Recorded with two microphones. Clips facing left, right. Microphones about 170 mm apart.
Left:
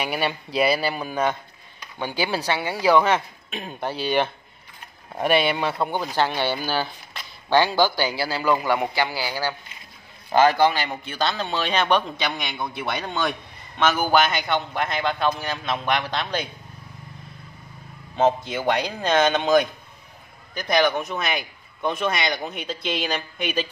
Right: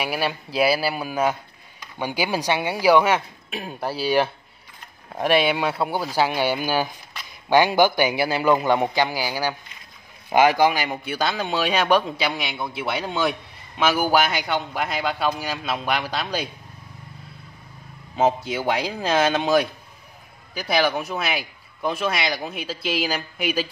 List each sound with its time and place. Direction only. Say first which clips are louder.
0.0 s a man's voice: even; centre (ahead or behind)
18.1 s a man's voice: even; 5° right (ahead or behind)